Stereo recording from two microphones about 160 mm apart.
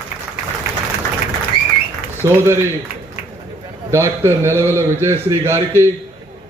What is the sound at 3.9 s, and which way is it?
A man's voice, 15° right (ahead or behind).